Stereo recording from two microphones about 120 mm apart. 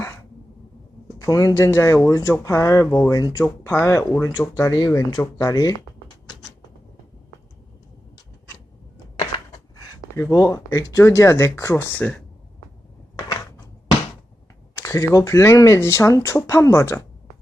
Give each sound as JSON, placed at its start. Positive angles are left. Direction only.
{"t": 1.2, "sound": "speech", "side_deg": 30}
{"t": 2.8, "sound": "speech", "side_deg": 15}
{"t": 3.1, "sound": "speech", "side_deg": 30}
{"t": 3.4, "sound": "speech", "side_deg": 20}
{"t": 10.2, "sound": "speech", "side_deg": 25}
{"t": 14.8, "sound": "speech", "side_deg": 25}